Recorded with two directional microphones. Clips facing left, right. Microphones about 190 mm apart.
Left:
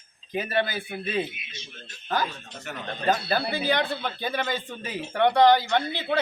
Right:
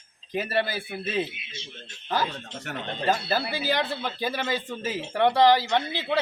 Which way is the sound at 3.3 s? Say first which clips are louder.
Left 1 dB; centre (ahead or behind).